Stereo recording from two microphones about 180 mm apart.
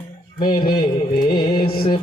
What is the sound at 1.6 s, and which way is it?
Music, 55° left (ahead or behind).